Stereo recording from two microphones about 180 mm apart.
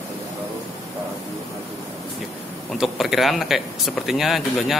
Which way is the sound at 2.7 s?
Centre (ahead or behind).